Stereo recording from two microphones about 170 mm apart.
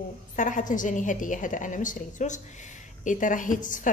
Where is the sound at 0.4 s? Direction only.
50° left (ahead or behind).